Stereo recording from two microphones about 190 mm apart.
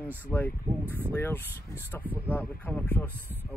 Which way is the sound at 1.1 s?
10° left (ahead or behind).